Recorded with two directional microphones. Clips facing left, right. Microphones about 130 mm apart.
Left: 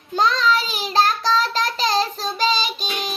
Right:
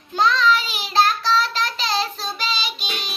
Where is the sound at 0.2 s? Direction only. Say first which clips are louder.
Right 1 dB; 40° left (ahead or behind).